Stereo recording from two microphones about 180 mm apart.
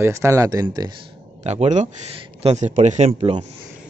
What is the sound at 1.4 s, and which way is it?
Speech, 40° right (ahead or behind).